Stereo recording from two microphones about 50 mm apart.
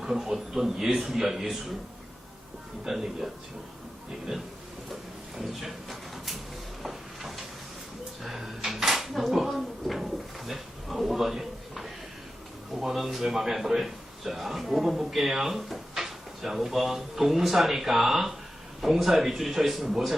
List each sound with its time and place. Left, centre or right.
0.0 s a man's voice: centre
2.8 s a man's voice: centre
4.3 s a man's voice: centre
6.8 s a sound: centre
12.8 s a man's voice: centre